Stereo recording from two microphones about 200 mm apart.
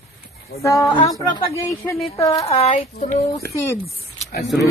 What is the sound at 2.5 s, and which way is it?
Speech, 30° left (ahead or behind).